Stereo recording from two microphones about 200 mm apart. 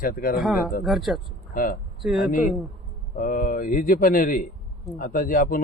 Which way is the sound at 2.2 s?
40° left (ahead or behind).